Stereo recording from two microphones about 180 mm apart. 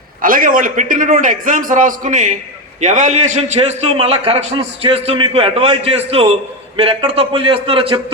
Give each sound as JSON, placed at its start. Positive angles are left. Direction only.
{"t": 0.2, "sound": "a man's voice", "side_deg": -50}